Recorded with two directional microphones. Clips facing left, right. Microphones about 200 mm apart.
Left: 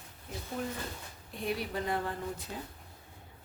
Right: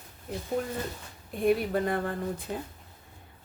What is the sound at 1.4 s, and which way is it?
A woman's voice, 55° right (ahead or behind).